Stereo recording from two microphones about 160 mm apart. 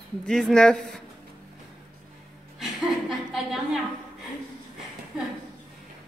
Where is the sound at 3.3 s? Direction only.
Centre (ahead or behind).